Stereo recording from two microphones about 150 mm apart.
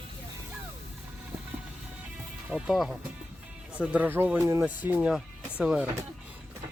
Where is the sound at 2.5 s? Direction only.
5° right (ahead or behind).